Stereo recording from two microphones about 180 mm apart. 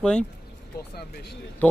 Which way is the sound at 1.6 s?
5° left (ahead or behind).